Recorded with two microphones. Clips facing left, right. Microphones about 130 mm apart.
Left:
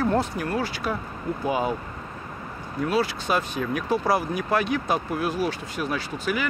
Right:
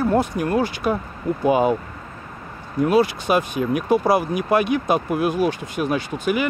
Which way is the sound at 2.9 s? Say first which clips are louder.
Right 6 dB; 15° right (ahead or behind).